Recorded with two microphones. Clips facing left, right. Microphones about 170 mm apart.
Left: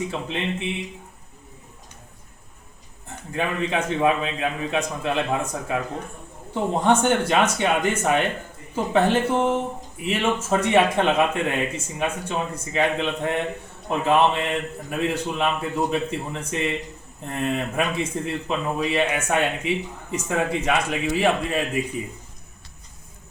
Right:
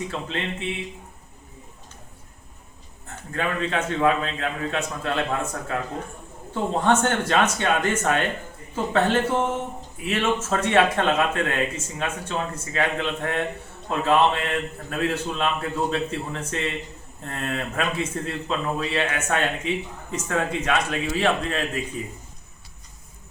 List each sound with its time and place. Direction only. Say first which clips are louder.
3.3 s speech: left 1 dB; 15° left (ahead or behind)